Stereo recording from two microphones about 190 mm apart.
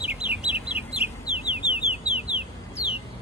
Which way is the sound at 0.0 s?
5° right (ahead or behind).